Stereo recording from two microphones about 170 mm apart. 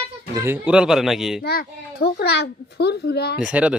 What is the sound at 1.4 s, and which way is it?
A child's voice, 65° left (ahead or behind).